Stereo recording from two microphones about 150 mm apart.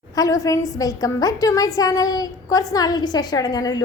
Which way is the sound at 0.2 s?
20° left (ahead or behind).